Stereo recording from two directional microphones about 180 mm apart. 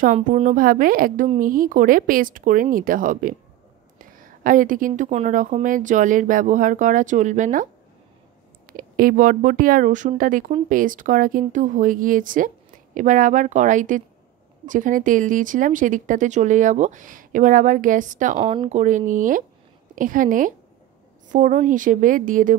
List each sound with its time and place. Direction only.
0.0 s speech: 45° right (ahead or behind)
8.7 s speech: 50° right (ahead or behind)
18.4 s speech: 30° right (ahead or behind); by 22.6 s 50° right (ahead or behind)